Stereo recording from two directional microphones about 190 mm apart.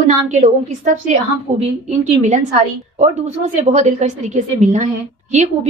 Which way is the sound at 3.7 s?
35° right (ahead or behind).